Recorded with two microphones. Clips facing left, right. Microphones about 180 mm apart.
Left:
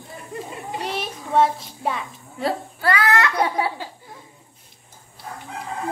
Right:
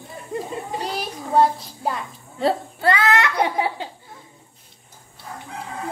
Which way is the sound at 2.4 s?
25° right (ahead or behind).